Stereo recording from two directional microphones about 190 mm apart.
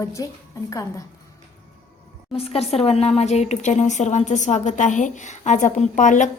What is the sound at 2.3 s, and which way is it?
A woman's voice, 30° left (ahead or behind).